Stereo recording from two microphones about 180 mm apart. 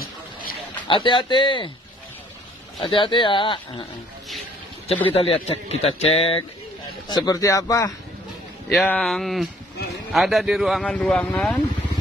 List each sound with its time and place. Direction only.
0.0 s a sound: 55° left (ahead or behind)
0.8 s speech: 25° left (ahead or behind)
2.8 s speech: 30° left (ahead or behind)
5.1 s speech: 30° left (ahead or behind)
7.1 s speech: 20° left (ahead or behind)
8.7 s speech: 5° left (ahead or behind)